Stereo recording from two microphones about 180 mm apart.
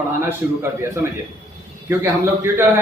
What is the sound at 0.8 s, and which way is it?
A man's voice, 15° right (ahead or behind).